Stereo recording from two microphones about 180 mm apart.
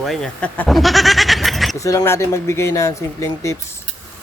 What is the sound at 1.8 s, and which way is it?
Speech, 15° left (ahead or behind).